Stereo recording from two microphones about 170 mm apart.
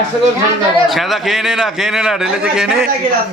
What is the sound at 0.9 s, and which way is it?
A man's voice, centre (ahead or behind).